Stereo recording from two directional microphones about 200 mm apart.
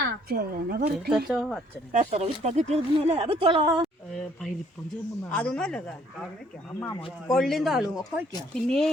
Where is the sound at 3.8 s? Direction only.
Centre (ahead or behind).